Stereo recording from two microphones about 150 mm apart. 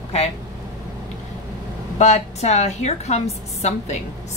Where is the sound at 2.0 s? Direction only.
50° left (ahead or behind).